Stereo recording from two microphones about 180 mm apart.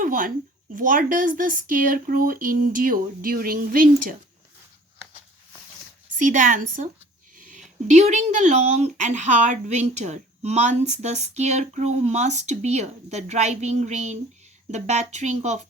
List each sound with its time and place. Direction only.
0.0 s a woman's voice: 50° right (ahead or behind)
6.1 s speech: 45° right (ahead or behind)
7.3 s a sound: 50° right (ahead or behind)
7.9 s speech: 40° right (ahead or behind)